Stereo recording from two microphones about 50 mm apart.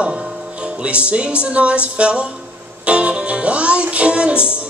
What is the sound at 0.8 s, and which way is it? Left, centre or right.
Music, right.